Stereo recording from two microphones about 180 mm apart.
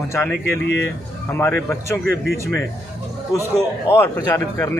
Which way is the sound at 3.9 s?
15° left (ahead or behind).